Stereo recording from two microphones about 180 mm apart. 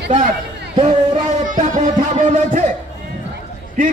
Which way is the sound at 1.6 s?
45° right (ahead or behind).